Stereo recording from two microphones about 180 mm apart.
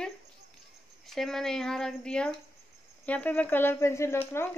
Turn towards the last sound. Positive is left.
turn(degrees=15)  # may be behind; listen again after turning